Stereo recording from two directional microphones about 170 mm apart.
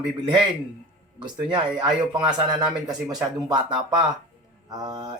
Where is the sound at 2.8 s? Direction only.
25° right (ahead or behind).